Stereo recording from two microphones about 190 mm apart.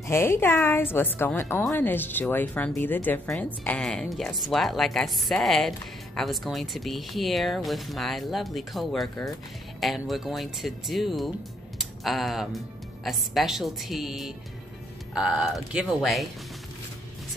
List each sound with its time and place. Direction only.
0.0 s a woman's voice: 15° left (ahead or behind)